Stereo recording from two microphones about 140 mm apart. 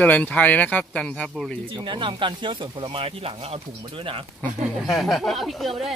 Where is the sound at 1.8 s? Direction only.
35° right (ahead or behind).